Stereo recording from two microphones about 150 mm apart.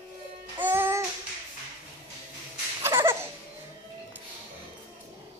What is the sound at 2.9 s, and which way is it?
Laughter, 15° right (ahead or behind).